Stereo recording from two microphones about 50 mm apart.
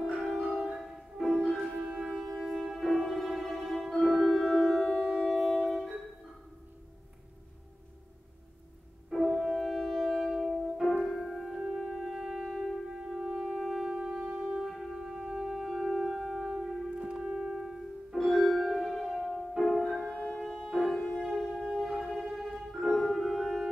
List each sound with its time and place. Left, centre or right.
0.0 s music: centre
1.2 s music: centre
1.8 s shofar: centre
2.1 s music: centre
5.0 s wind instrument: centre
5.7 s music: centre
9.1 s music: centre
17.1 s music: centre
17.5 s piano: centre
18.3 s music: centre
20.1 s music: left
20.4 s music: centre
21.6 s a sound: centre
22.7 s music: centre